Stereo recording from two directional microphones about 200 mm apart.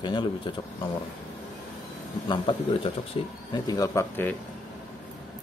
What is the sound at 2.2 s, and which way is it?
Speech, 25° left (ahead or behind).